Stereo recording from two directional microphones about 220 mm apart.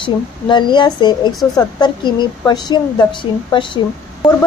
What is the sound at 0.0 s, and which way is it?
A woman's voice, 20° left (ahead or behind).